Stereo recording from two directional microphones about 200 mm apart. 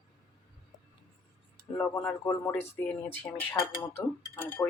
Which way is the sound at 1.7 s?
10° left (ahead or behind).